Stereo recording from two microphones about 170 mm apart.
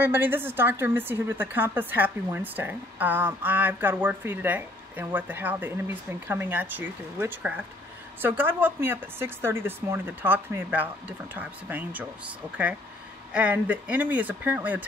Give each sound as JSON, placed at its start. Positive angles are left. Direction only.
{"t": 0.0, "sound": "a woman's voice", "side_deg": -10}
{"t": 13.3, "sound": "a woman's voice", "side_deg": -10}